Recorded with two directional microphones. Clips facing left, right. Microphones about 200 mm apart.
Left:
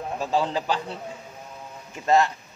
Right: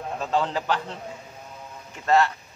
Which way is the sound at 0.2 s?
10° left (ahead or behind).